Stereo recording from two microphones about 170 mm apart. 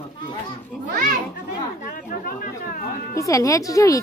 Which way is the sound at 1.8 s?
55° left (ahead or behind).